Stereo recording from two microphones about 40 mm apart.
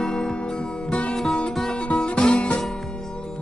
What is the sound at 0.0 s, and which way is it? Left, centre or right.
Music, centre.